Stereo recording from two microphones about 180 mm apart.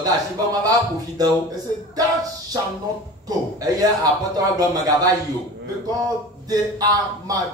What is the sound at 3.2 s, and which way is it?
Speech, 20° right (ahead or behind).